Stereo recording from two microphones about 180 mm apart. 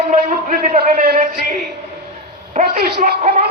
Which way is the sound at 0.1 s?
45° right (ahead or behind).